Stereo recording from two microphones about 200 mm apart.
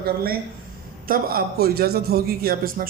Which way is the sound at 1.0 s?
45° right (ahead or behind).